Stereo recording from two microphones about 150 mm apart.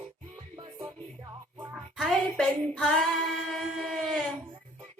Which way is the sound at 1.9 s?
Centre (ahead or behind).